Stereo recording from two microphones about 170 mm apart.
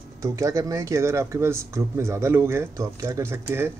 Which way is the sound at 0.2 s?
20° right (ahead or behind).